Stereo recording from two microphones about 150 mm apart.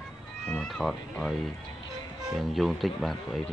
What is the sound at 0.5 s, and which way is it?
A man's voice, 5° left (ahead or behind).